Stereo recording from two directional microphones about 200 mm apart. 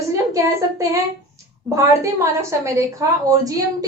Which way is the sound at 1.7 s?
15° right (ahead or behind).